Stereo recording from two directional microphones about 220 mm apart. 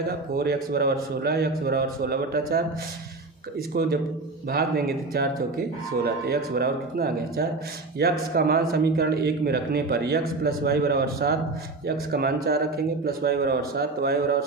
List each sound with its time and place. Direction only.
0.1 s a man's voice: 45° right (ahead or behind)
3.7 s a man's voice: 45° right (ahead or behind)